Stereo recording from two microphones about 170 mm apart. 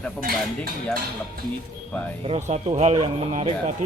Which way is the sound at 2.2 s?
35° right (ahead or behind).